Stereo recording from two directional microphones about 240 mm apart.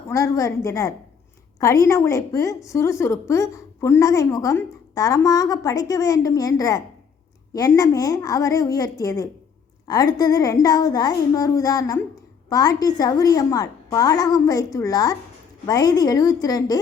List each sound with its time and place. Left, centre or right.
0.1 s a woman's voice: centre